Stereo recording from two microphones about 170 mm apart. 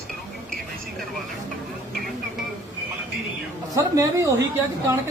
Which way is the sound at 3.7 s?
20° right (ahead or behind).